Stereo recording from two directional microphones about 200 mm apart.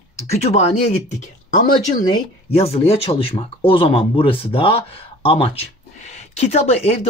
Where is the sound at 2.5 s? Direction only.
30° left (ahead or behind).